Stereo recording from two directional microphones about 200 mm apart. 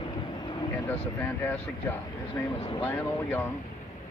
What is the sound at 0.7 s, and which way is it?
Speech, 10° left (ahead or behind).